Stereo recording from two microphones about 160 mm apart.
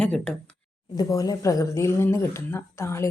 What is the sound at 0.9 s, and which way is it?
Speech, 25° left (ahead or behind).